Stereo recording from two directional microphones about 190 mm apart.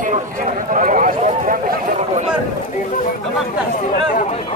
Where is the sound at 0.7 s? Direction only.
45° right (ahead or behind).